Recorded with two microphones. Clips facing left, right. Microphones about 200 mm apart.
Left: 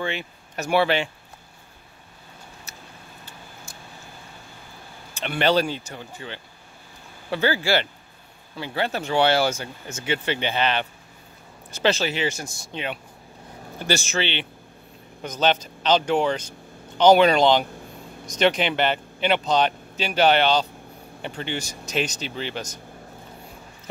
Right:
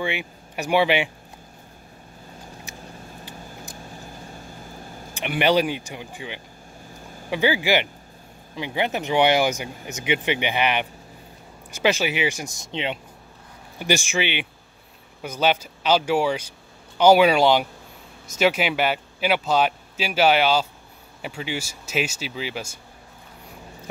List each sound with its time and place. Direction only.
0.0 s speech: 15° right (ahead or behind)
5.1 s speech: 15° right (ahead or behind)